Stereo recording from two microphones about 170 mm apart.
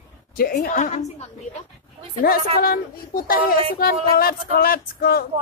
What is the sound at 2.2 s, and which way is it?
Speech, 60° left (ahead or behind).